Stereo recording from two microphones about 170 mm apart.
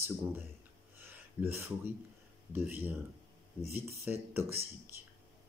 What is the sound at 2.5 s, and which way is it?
Speech, 10° right (ahead or behind).